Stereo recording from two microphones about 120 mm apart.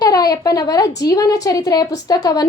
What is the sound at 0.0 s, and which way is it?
A woman's voice, 30° left (ahead or behind).